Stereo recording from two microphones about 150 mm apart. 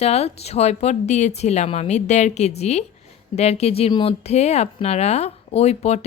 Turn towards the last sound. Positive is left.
turn(degrees=45)  # may be behind; listen again after turning